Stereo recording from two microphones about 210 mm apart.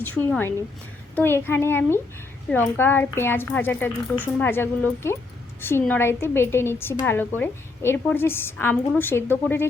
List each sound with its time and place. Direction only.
0.2 s a woman's voice: 10° left (ahead or behind)